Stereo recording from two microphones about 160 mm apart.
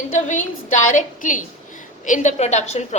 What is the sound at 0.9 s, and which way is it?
A woman's voice, 55° left (ahead or behind).